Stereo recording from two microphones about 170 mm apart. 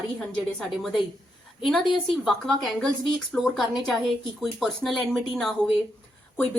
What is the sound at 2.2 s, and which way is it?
Speech, centre (ahead or behind).